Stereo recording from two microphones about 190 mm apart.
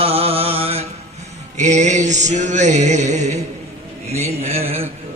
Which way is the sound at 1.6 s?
40° right (ahead or behind).